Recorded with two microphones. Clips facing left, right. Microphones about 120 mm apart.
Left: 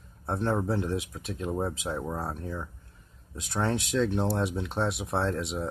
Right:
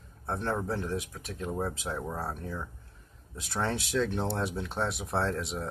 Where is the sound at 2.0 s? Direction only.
15° left (ahead or behind).